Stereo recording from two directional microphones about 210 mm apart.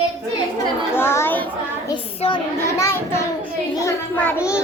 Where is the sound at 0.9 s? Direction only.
10° left (ahead or behind).